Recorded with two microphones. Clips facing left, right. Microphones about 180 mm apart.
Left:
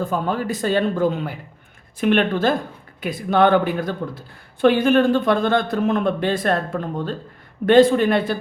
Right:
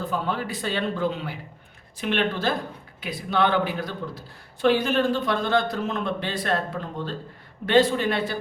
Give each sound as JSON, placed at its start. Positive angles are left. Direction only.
{"t": 0.0, "sound": "speech", "side_deg": 45}